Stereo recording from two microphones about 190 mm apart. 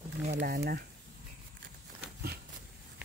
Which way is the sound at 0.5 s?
55° right (ahead or behind).